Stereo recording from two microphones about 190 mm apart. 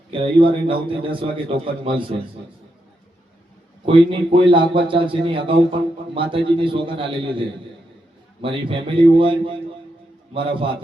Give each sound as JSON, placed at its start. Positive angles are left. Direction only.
{"t": 0.1, "sound": "a man's voice", "side_deg": -25}
{"t": 3.8, "sound": "a man's voice", "side_deg": -25}